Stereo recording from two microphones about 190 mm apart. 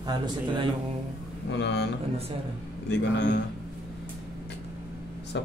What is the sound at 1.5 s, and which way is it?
Speech, 65° left (ahead or behind).